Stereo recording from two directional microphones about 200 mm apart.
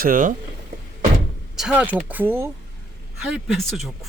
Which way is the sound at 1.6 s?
5° right (ahead or behind).